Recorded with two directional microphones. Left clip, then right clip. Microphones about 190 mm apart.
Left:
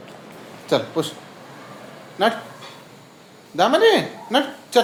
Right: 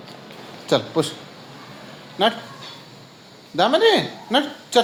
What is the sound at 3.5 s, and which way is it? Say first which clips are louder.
Speech: left 1 dB; 25° right (ahead or behind).